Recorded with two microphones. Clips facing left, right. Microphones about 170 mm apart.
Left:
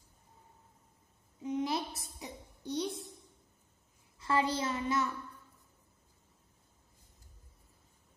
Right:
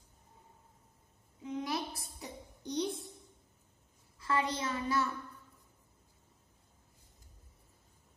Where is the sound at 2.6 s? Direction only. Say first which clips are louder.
Right 1 dB; centre (ahead or behind).